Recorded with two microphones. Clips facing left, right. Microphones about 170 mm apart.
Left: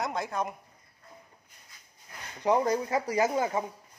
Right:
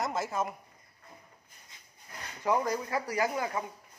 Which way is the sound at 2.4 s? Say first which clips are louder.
Left 4 dB; 25° left (ahead or behind).